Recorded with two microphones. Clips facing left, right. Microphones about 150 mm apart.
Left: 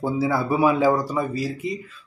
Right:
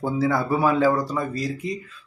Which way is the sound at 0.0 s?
5° left (ahead or behind).